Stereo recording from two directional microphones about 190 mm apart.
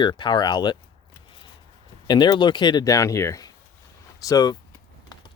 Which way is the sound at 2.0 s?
20° left (ahead or behind).